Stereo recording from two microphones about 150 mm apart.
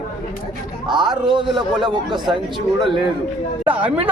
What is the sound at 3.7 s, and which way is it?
Speech, 10° right (ahead or behind).